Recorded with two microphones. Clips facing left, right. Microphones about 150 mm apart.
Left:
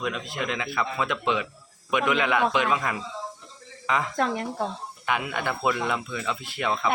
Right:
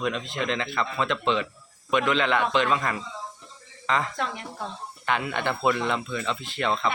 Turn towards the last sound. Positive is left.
turn(degrees=10)  # may be behind; listen again after turning